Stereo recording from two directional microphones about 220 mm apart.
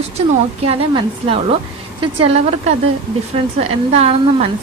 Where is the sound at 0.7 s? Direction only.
25° right (ahead or behind).